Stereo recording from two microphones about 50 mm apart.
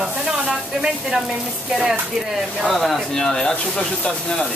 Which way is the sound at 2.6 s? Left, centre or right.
Centre.